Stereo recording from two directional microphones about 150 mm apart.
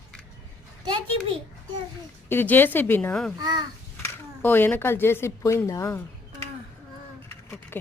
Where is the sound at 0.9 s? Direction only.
35° right (ahead or behind).